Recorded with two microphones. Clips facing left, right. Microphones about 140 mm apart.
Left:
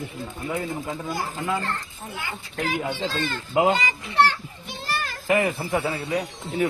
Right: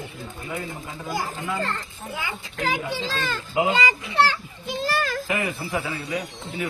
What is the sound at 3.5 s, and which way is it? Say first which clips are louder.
Speech: left 3 dB; 45° left (ahead or behind).